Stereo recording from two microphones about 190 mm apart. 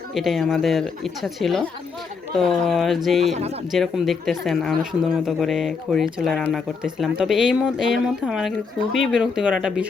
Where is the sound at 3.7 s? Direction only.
Centre (ahead or behind).